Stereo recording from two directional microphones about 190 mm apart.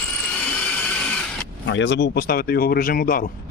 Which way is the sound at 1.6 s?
75° left (ahead or behind).